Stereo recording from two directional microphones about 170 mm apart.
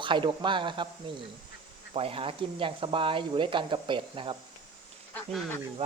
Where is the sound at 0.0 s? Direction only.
30° right (ahead or behind).